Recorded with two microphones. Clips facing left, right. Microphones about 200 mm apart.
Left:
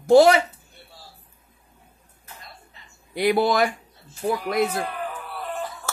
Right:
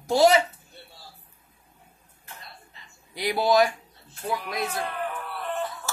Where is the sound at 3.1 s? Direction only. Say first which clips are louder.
Left 2 dB; 55° left (ahead or behind).